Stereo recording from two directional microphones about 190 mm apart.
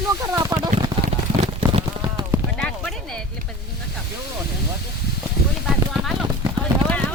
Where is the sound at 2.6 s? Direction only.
5° left (ahead or behind).